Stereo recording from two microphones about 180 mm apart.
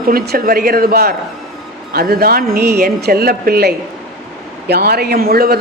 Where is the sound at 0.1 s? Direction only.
55° right (ahead or behind).